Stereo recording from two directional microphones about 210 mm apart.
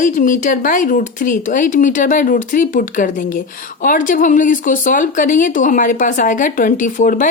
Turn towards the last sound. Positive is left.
turn(degrees=40)  # may be behind; listen again after turning